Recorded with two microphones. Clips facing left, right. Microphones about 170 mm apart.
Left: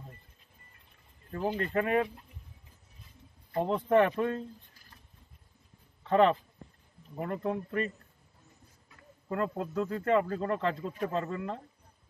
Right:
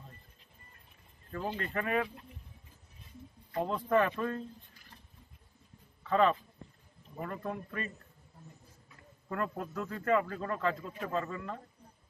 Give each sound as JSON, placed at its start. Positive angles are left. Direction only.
{"t": 1.6, "sound": "speech", "side_deg": 25}
{"t": 3.6, "sound": "speech", "side_deg": 25}
{"t": 6.0, "sound": "a man's voice", "side_deg": 25}
{"t": 9.3, "sound": "speech", "side_deg": 25}